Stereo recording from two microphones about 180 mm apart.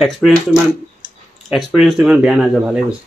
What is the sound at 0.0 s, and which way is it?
Speech, centre (ahead or behind).